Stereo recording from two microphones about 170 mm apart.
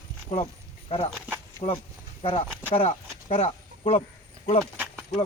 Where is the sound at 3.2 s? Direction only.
45° left (ahead or behind).